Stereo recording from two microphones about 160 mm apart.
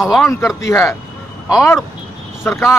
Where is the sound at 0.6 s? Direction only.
20° left (ahead or behind).